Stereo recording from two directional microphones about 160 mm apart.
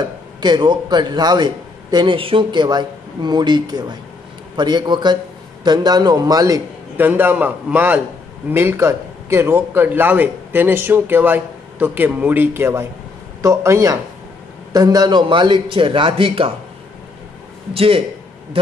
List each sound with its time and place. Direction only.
0.0 s a man's voice: 25° right (ahead or behind)
7.1 s a man's voice: 10° right (ahead or behind); by 16.5 s 35° right (ahead or behind)
17.7 s a man's voice: 35° right (ahead or behind)